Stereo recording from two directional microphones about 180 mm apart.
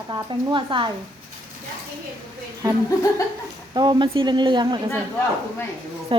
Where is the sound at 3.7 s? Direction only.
25° right (ahead or behind).